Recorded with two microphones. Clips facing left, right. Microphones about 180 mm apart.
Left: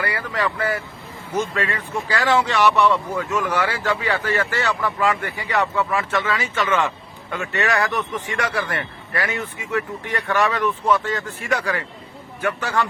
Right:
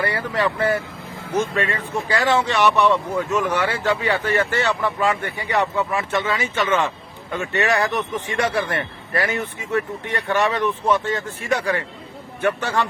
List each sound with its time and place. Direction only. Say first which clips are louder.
0.0 s speech: right 2 dB; 25° right (ahead or behind)